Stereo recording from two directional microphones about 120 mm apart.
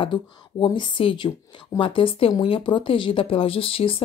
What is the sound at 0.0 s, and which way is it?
Speech, 40° left (ahead or behind).